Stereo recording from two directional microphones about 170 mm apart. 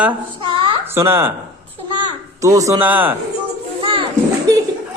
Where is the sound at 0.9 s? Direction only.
15° right (ahead or behind).